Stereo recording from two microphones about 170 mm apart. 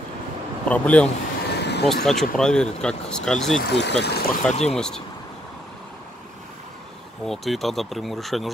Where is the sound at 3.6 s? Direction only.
85° left.